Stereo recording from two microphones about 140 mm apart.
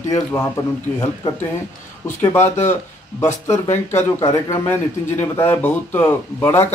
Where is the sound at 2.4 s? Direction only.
55° left (ahead or behind).